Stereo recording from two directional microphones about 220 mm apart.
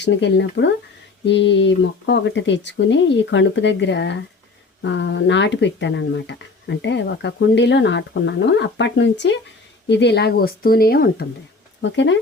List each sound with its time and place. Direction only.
0.0 s speech: 55° left (ahead or behind)
11.8 s speech: 55° left (ahead or behind)